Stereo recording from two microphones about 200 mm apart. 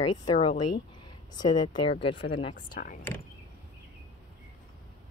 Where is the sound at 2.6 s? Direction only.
45° left (ahead or behind).